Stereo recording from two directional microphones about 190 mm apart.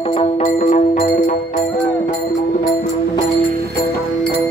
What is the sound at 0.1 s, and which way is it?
Music, 30° left (ahead or behind).